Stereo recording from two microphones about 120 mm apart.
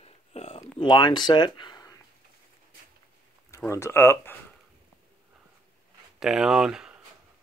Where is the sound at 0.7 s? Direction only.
40° left (ahead or behind).